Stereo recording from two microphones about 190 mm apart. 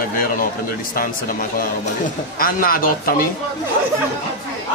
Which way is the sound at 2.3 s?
50° left (ahead or behind).